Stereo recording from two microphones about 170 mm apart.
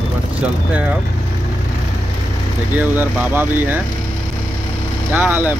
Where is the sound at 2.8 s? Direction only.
10° right (ahead or behind).